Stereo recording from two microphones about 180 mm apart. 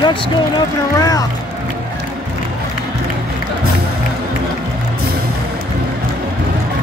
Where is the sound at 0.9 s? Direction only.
20° left (ahead or behind).